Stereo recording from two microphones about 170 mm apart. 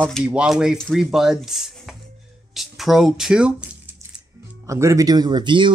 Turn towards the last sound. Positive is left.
turn(degrees=-30)  # may be behind; listen again after turning